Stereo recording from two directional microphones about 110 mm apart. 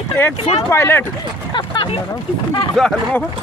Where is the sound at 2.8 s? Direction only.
Centre (ahead or behind).